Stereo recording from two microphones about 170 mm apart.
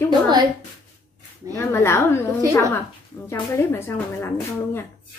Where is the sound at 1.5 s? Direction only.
15° left (ahead or behind).